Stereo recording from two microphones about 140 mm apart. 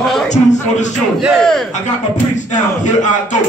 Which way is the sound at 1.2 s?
5° left (ahead or behind).